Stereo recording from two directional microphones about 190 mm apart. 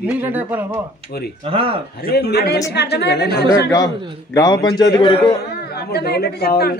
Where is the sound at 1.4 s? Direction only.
30° right (ahead or behind).